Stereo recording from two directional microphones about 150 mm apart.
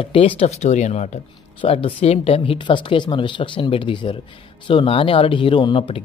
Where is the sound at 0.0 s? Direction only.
35° left (ahead or behind).